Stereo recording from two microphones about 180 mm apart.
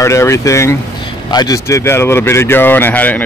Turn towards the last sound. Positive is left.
turn(degrees=10)  # may be behind; listen again after turning